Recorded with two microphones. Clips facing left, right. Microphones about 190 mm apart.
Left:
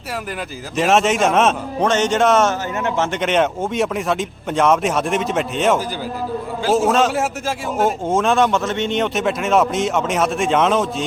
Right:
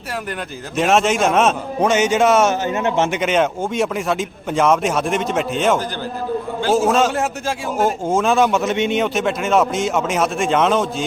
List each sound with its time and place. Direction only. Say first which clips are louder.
0.8 s a man's voice: even; centre (ahead or behind)
2.5 s speech: right 3 dB; 20° right (ahead or behind)
3.1 s a man's voice: even; centre (ahead or behind)